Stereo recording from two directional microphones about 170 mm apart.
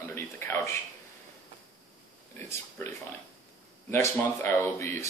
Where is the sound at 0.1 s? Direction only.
15° left (ahead or behind).